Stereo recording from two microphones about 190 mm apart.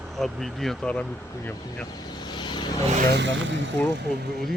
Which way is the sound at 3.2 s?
75° right (ahead or behind).